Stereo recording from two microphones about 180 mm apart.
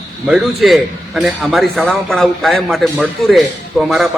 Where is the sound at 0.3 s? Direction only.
Centre (ahead or behind).